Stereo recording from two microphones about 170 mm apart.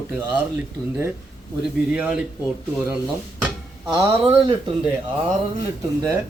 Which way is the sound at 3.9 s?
20° right (ahead or behind).